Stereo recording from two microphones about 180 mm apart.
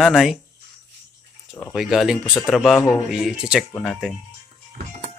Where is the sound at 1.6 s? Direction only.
Centre (ahead or behind).